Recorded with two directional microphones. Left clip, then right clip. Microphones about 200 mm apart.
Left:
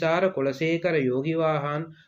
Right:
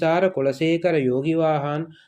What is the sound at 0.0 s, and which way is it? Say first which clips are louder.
Speech: right 4 dB; 20° right (ahead or behind).